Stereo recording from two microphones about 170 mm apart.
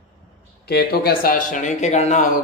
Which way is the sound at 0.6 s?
70° left (ahead or behind).